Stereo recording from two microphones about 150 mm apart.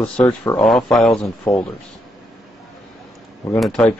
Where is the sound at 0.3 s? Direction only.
10° left (ahead or behind).